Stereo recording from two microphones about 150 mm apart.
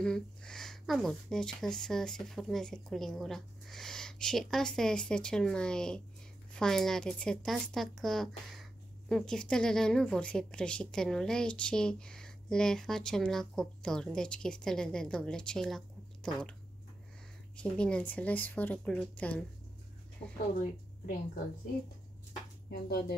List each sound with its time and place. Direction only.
0.0 s a woman's voice: 5° left (ahead or behind)
17.6 s speech: 5° left (ahead or behind)
20.2 s speech: 40° left (ahead or behind)
22.7 s speech: 90° left